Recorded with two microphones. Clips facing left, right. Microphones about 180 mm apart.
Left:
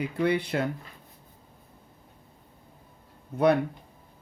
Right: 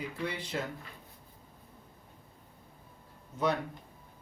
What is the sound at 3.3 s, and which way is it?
Speech, 60° left (ahead or behind).